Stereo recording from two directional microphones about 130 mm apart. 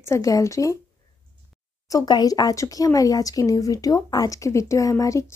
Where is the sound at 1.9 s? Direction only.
30° left (ahead or behind).